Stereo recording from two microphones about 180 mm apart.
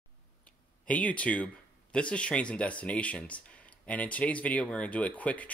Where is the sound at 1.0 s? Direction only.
5° left (ahead or behind).